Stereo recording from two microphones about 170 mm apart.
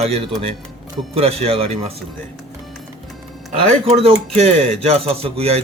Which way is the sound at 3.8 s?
35° right (ahead or behind).